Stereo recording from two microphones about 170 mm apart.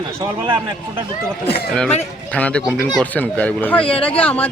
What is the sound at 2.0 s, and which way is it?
A woman's voice, 10° left (ahead or behind).